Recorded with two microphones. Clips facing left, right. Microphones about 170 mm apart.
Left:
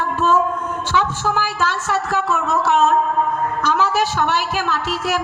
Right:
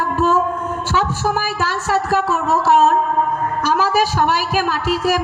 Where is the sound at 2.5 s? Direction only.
35° right (ahead or behind).